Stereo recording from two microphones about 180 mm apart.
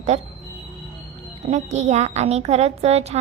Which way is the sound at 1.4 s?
40° right (ahead or behind).